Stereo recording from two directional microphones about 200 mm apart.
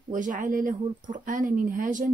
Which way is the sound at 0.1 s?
40° right (ahead or behind).